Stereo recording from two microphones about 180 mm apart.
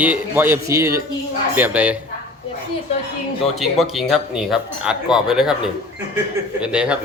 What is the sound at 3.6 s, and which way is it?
Speech, centre (ahead or behind).